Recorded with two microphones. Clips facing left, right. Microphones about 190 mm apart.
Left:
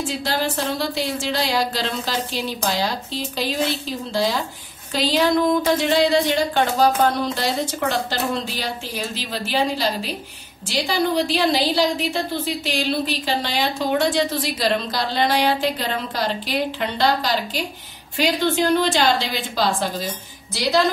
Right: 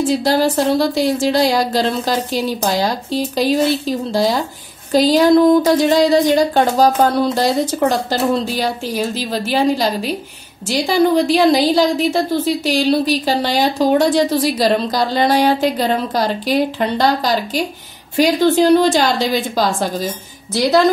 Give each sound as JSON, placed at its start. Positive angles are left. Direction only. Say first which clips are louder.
{"t": 0.1, "sound": "a woman's voice", "louder": "right 9 dB", "side_deg": -40}